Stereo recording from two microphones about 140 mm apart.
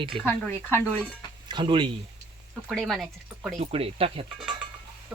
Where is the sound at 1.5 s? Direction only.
35° right (ahead or behind).